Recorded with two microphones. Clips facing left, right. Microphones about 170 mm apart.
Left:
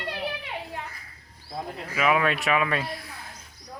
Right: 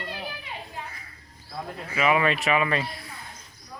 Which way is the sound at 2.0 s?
Centre (ahead or behind).